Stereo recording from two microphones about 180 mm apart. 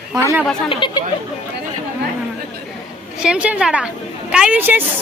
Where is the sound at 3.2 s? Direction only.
5° right (ahead or behind).